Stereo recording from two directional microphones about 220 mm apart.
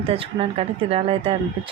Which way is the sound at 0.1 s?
25° right (ahead or behind).